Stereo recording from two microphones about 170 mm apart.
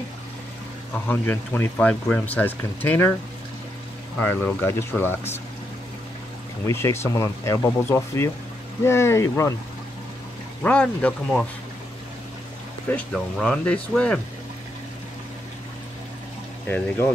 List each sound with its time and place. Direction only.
0.9 s speech: 10° left (ahead or behind)
4.2 s speech: 10° left (ahead or behind)
6.6 s speech: 15° left (ahead or behind)
10.6 s speech: 5° left (ahead or behind)
12.9 s speech: 5° left (ahead or behind)
16.6 s speech: 15° left (ahead or behind)